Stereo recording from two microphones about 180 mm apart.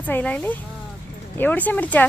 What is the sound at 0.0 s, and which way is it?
Speech, 10° left (ahead or behind).